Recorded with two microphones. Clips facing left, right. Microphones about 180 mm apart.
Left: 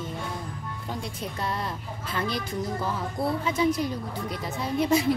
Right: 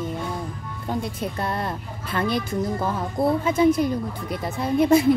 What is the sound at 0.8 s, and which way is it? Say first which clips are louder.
A woman's voice: right 8 dB; 55° right (ahead or behind).